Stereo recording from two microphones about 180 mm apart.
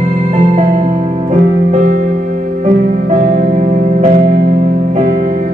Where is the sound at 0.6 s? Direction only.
40° right (ahead or behind).